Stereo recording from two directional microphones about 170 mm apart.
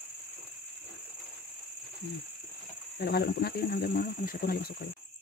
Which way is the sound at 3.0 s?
70° left (ahead or behind).